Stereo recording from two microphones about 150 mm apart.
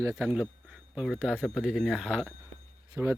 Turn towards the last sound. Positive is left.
turn(degrees=-15)  # may be behind; listen again after turning